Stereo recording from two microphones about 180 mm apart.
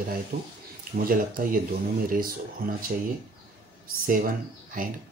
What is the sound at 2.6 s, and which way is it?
Speech, 55° right (ahead or behind).